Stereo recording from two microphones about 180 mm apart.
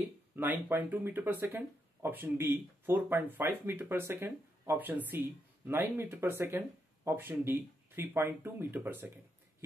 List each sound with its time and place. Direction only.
0.4 s speech: 10° right (ahead or behind)